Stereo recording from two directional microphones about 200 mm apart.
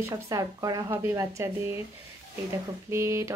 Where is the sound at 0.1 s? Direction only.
20° right (ahead or behind).